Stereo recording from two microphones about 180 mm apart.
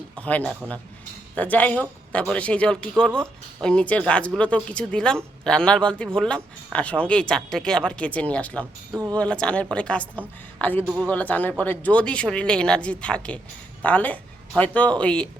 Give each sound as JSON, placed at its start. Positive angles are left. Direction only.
{"t": 0.2, "sound": "a man's voice", "side_deg": 10}
{"t": 8.9, "sound": "speech", "side_deg": -15}
{"t": 9.1, "sound": "a man's voice", "side_deg": 5}
{"t": 10.8, "sound": "speech", "side_deg": -10}
{"t": 11.1, "sound": "a man's voice", "side_deg": 10}